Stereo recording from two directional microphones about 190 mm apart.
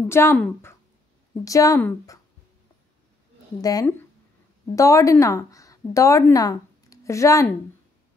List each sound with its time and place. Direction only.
0.1 s speech: 15° left (ahead or behind)
3.6 s a woman's voice: 20° left (ahead or behind)